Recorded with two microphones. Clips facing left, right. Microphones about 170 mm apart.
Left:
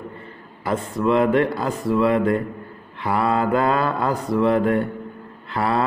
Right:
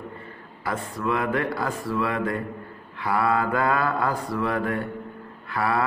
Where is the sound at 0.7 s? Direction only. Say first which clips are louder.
Left 6 dB; 25° left (ahead or behind).